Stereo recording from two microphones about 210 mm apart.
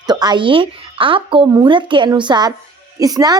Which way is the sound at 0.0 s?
20° right (ahead or behind).